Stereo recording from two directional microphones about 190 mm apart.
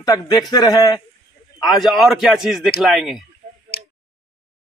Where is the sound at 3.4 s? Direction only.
40° right (ahead or behind).